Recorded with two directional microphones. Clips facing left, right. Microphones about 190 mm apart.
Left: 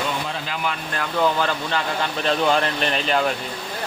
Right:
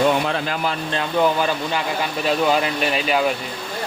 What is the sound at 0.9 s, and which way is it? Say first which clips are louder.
Speech: right 2 dB; 20° right (ahead or behind).